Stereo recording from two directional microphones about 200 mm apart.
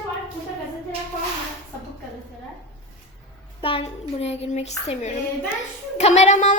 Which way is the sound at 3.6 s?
25° left (ahead or behind).